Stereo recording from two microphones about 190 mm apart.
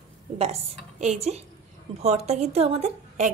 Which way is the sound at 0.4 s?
35° right (ahead or behind).